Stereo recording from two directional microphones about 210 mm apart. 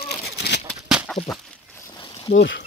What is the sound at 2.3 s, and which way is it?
Speech, 60° left (ahead or behind).